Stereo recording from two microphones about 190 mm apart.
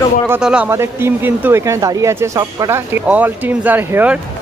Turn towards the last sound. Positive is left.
turn(degrees=-10)  # may be behind; listen again after turning